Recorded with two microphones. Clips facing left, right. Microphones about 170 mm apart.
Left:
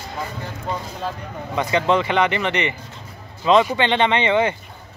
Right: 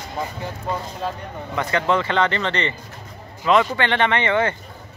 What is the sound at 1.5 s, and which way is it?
Speech, 15° left (ahead or behind).